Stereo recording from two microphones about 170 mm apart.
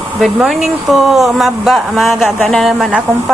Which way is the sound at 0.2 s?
Centre (ahead or behind).